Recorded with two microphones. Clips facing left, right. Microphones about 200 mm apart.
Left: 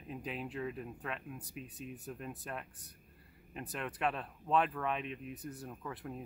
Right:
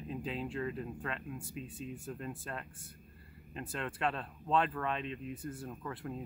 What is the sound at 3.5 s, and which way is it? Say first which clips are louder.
Speech: right 1 dB; 15° left (ahead or behind).